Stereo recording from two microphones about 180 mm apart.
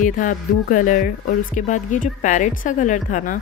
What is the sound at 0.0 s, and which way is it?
Speech, 45° left (ahead or behind).